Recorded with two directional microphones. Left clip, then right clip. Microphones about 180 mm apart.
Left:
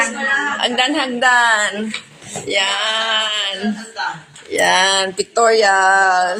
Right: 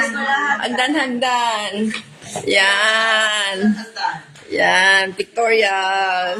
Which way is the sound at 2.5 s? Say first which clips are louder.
Right 3 dB; 45° right (ahead or behind).